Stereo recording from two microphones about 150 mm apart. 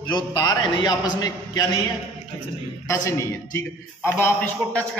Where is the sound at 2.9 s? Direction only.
20° left (ahead or behind).